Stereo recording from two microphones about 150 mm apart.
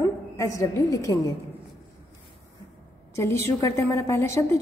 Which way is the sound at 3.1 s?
20° left (ahead or behind).